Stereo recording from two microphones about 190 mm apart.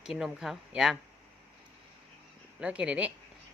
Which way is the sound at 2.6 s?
5° right (ahead or behind).